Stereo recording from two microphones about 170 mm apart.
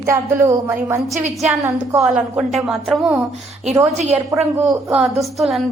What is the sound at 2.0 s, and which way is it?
A woman's voice, 5° right (ahead or behind).